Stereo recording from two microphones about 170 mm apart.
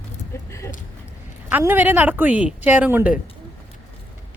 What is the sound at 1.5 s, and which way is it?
A woman's voice, 10° right (ahead or behind).